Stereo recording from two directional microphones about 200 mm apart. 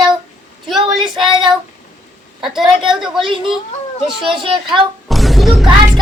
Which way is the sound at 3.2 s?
25° right (ahead or behind).